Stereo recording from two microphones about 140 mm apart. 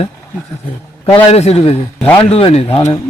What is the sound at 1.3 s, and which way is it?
Speech, 45° left (ahead or behind).